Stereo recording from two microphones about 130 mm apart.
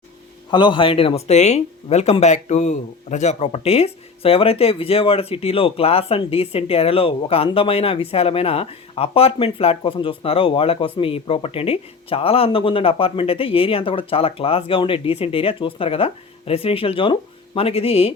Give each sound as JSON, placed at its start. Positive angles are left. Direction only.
{"t": 0.5, "sound": "speech", "side_deg": 40}